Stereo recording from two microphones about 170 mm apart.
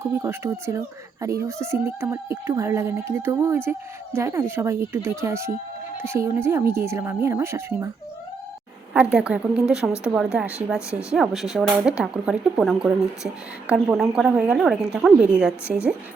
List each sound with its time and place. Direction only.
0.0 s speech: 20° right (ahead or behind)
8.9 s speech: 5° right (ahead or behind)